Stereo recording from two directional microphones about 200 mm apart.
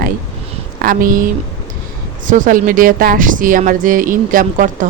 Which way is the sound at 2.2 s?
40° right (ahead or behind).